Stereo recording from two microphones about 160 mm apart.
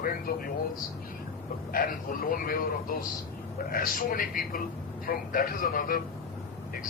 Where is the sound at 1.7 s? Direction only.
65° left (ahead or behind).